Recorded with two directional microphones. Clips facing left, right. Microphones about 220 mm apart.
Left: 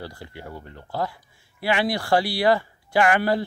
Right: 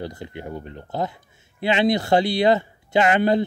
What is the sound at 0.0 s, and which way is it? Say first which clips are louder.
Speech: right 5 dB; 20° right (ahead or behind).